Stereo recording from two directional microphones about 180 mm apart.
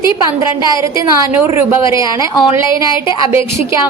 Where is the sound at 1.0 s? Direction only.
15° right (ahead or behind).